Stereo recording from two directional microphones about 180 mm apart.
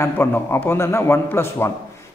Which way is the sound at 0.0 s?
10° left (ahead or behind).